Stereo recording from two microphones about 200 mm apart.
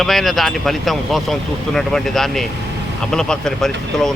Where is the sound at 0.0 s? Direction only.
Centre (ahead or behind).